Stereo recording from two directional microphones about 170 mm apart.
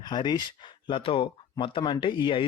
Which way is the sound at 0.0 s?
25° left (ahead or behind).